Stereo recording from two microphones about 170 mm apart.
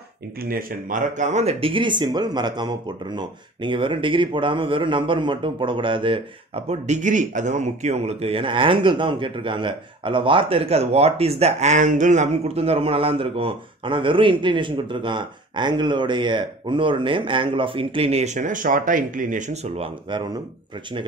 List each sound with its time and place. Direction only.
0.4 s speech: 60° right (ahead or behind); by 19.9 s 40° right (ahead or behind)